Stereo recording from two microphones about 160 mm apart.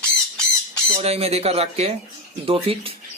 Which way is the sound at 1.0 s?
40° right (ahead or behind).